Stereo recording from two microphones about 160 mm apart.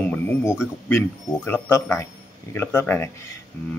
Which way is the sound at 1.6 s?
15° left (ahead or behind).